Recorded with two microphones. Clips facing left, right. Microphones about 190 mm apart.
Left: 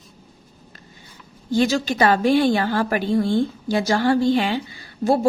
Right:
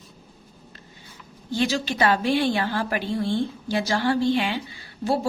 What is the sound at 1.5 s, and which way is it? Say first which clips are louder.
A woman's voice: left 5 dB; 45° left (ahead or behind).